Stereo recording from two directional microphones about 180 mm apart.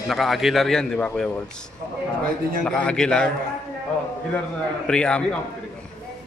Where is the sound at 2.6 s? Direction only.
5° left (ahead or behind).